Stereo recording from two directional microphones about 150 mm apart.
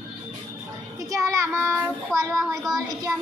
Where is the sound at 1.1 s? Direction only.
20° right (ahead or behind).